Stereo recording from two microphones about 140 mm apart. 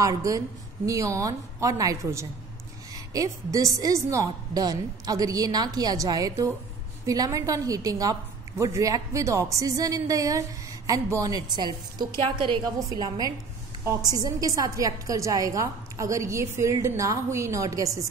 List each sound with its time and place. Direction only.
0.0 s a woman's voice: 25° right (ahead or behind)